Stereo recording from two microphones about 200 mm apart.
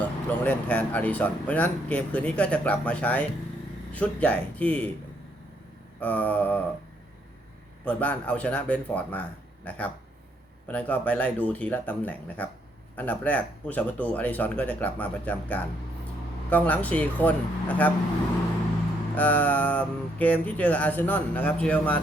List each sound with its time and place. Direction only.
0.3 s speech: 10° left (ahead or behind)
6.0 s speech: 10° left (ahead or behind)
7.9 s speech: 5° left (ahead or behind)
19.1 s speech: 10° left (ahead or behind)